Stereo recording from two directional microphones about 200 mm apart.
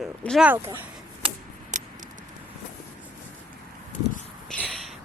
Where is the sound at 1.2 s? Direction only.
25° right (ahead or behind).